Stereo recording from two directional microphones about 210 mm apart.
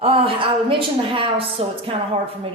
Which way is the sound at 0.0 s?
25° right (ahead or behind).